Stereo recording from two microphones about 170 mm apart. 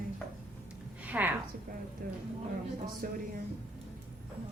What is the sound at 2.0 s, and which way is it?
Speech, 55° right (ahead or behind).